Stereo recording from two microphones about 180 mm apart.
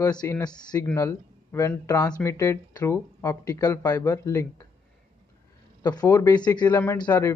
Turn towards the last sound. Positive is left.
turn(degrees=20)  # may be behind; listen again after turning